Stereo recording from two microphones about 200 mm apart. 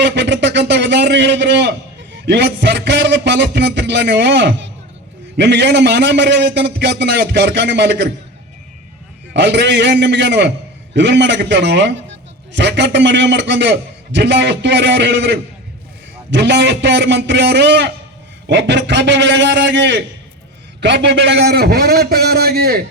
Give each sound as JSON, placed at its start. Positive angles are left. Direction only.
{"t": 0.0, "sound": "a sound", "side_deg": -60}
{"t": 2.2, "sound": "a man's voice", "side_deg": -60}
{"t": 9.3, "sound": "a man's voice", "side_deg": -60}